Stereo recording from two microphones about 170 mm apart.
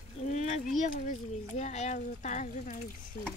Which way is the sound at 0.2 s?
40° left (ahead or behind).